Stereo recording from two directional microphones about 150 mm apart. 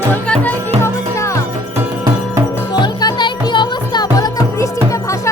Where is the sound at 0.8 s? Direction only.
20° left (ahead or behind).